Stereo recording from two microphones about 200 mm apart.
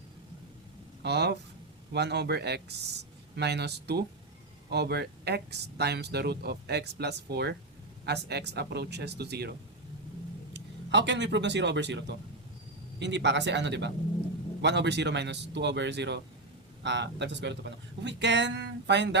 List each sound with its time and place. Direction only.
1.0 s speech: 55° right (ahead or behind)